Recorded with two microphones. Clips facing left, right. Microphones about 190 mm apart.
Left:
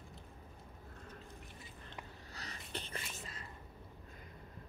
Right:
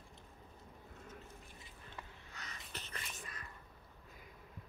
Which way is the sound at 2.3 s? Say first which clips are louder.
Left 5 dB; 35° left (ahead or behind).